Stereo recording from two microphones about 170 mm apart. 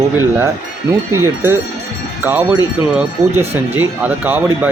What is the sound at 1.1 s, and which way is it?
Speech, 15° right (ahead or behind).